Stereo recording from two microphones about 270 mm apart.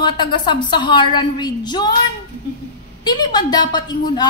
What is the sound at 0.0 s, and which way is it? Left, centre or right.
A woman's voice, centre.